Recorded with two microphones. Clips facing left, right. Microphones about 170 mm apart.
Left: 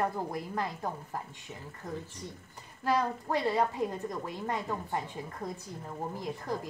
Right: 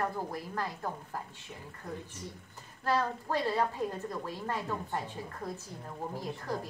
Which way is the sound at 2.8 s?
15° left (ahead or behind).